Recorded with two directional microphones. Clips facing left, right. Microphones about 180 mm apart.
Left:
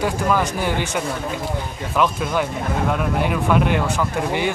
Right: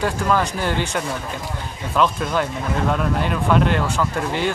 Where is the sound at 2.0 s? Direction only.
10° left (ahead or behind).